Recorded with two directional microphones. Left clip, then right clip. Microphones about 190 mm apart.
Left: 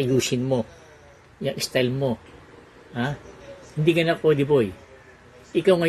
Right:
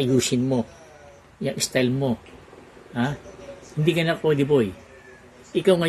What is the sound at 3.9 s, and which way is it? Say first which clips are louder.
Speech: left 2 dB; 5° right (ahead or behind).